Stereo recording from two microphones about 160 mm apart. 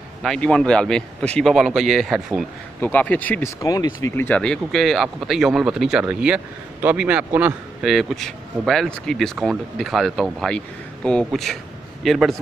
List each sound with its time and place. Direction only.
0.2 s speech: 5° left (ahead or behind)
2.8 s speech: 10° left (ahead or behind)
3.6 s speech: 20° left (ahead or behind)
4.1 s speech: 10° left (ahead or behind)